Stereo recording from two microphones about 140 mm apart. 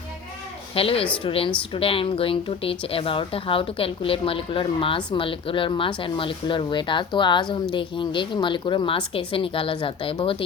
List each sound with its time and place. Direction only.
0.7 s a woman's voice: 40° left (ahead or behind)